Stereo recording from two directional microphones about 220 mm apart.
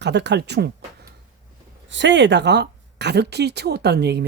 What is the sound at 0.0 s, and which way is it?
Speech, 50° right (ahead or behind).